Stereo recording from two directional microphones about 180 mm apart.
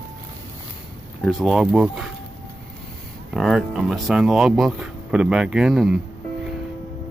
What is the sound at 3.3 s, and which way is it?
Speech, centre (ahead or behind).